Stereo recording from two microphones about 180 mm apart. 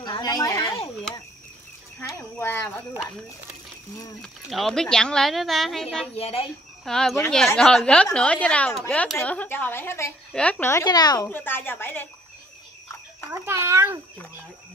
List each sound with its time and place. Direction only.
0.0 s a woman's voice: 20° left (ahead or behind)
2.0 s a woman's voice: 15° left (ahead or behind)
4.2 s speech: centre (ahead or behind)
6.1 s speech: 35° left (ahead or behind)
6.8 s a woman's voice: 5° left (ahead or behind); by 11.2 s 20° left (ahead or behind)
11.2 s a woman's voice: 10° left (ahead or behind)
13.3 s a child's voice: 15° right (ahead or behind)